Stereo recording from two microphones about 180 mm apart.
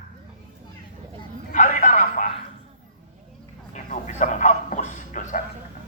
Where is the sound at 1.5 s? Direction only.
45° left (ahead or behind).